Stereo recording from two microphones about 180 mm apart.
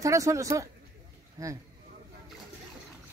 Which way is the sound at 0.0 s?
15° right (ahead or behind).